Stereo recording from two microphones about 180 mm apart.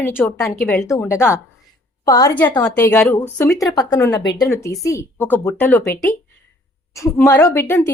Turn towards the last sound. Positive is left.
turn(degrees=10)  # may be behind; listen again after turning